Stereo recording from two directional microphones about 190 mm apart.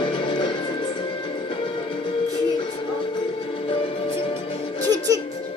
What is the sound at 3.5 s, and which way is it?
Music, 30° left (ahead or behind).